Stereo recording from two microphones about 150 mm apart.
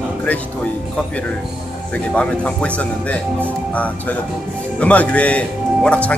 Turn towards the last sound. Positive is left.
turn(degrees=10)  # may be behind; listen again after turning